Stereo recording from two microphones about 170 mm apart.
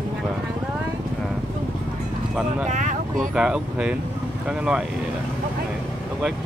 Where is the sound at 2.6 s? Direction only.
45° right (ahead or behind).